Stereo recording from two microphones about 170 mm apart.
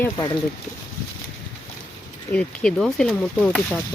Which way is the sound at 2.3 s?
5° left (ahead or behind).